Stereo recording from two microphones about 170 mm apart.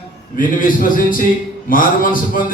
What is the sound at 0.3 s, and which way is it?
A man's voice, 50° left (ahead or behind).